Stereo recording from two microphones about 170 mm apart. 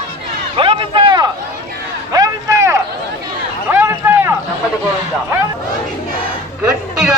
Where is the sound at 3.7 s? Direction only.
15° right (ahead or behind).